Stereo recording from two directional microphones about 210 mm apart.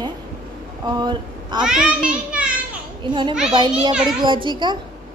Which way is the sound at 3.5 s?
20° right (ahead or behind).